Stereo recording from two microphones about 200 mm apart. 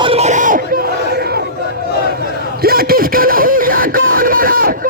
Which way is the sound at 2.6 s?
50° right (ahead or behind).